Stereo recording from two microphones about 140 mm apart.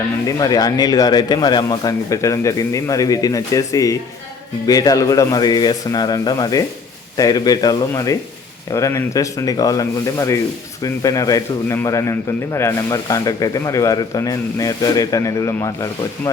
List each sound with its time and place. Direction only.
0.3 s a man's voice: 25° left (ahead or behind)